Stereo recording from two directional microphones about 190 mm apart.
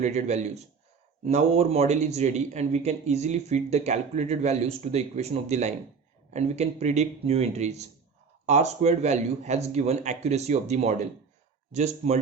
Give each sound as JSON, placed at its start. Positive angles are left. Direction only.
{"t": 0.0, "sound": "a man's voice", "side_deg": -35}